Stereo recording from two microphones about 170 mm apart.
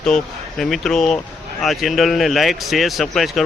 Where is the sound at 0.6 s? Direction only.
Centre (ahead or behind).